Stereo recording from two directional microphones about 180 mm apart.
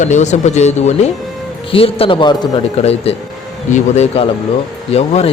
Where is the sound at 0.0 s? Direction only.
40° left (ahead or behind); by 2.5 s 25° left (ahead or behind).